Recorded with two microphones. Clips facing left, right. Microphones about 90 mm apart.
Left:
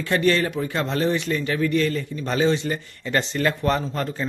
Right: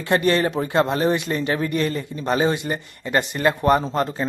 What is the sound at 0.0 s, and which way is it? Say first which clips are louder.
Speech: right 1 dB; 20° right (ahead or behind).